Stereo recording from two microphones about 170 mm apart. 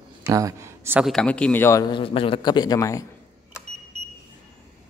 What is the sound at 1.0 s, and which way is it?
A man's voice, 5° left (ahead or behind).